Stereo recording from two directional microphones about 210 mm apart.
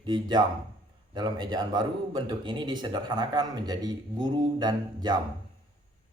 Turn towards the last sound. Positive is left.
turn(degrees=-20)  # may be behind; listen again after turning